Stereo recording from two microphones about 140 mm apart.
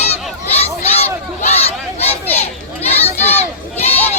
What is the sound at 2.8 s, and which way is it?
Children playing, 50° left (ahead or behind).